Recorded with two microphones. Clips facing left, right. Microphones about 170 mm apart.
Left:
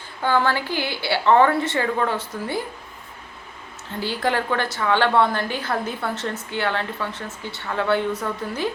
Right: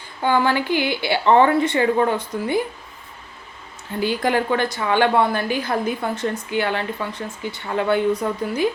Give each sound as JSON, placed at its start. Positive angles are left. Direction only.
{"t": 0.2, "sound": "a woman's voice", "side_deg": -15}
{"t": 4.0, "sound": "a woman's voice", "side_deg": -15}